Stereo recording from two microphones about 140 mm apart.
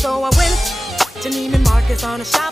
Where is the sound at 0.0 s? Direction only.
Centre (ahead or behind).